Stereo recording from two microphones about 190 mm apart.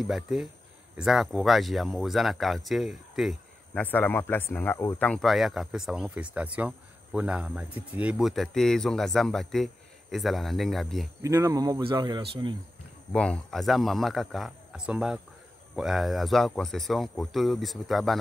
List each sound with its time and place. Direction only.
0.0 s speech: centre (ahead or behind)
3.8 s speech: 10° left (ahead or behind)
11.2 s speech: 15° right (ahead or behind)
13.1 s speech: 5° left (ahead or behind)